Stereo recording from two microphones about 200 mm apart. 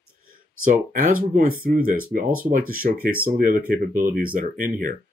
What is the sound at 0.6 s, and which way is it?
Speech, 45° right (ahead or behind).